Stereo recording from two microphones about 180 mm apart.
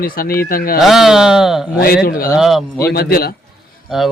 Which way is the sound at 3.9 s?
Centre (ahead or behind).